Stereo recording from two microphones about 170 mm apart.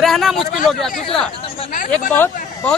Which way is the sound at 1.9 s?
10° left (ahead or behind).